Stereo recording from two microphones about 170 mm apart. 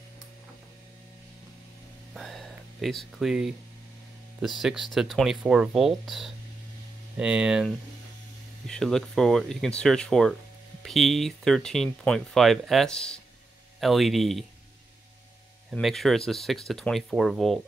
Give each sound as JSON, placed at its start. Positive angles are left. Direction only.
{"t": 2.1, "sound": "a sound", "side_deg": 0}
{"t": 4.6, "sound": "speech", "side_deg": -5}
{"t": 15.7, "sound": "speech", "side_deg": 0}